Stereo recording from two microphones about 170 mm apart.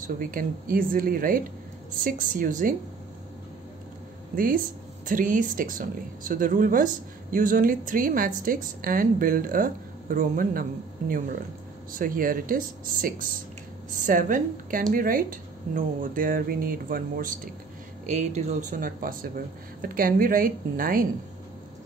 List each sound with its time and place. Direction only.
0.0 s speech: 55° right (ahead or behind)
5.0 s speech: 50° right (ahead or behind)
18.0 s speech: 45° right (ahead or behind)